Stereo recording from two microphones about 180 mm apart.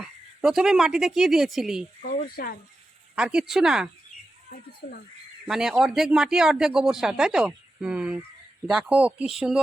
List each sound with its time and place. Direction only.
0.0 s speech: 5° right (ahead or behind)
2.0 s speech: 50° left (ahead or behind)
3.2 s speech: 5° right (ahead or behind)
4.8 s speech: 55° left (ahead or behind)
5.5 s speech: 5° right (ahead or behind)